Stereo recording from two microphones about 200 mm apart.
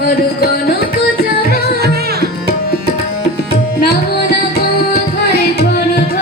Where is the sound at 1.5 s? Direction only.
50° right (ahead or behind).